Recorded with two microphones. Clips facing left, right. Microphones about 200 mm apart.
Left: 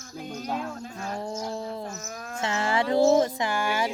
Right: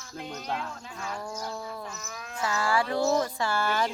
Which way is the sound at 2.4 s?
20° left (ahead or behind).